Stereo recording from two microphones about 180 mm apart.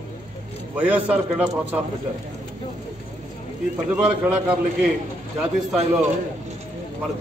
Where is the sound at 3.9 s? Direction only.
5° right (ahead or behind).